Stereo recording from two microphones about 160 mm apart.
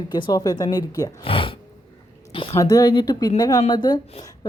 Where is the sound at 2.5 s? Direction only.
20° left (ahead or behind).